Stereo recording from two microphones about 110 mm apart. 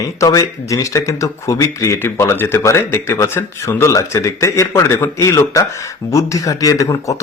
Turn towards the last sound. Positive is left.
turn(degrees=30)  # may be behind; listen again after turning